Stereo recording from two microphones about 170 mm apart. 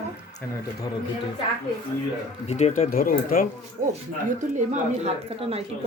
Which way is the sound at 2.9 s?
55° left (ahead or behind).